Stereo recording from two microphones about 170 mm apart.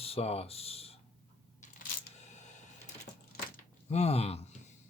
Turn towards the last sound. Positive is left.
turn(degrees=35)  # may be behind; listen again after turning